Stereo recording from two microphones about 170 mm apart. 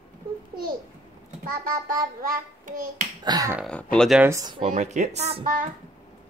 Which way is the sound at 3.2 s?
20° right (ahead or behind).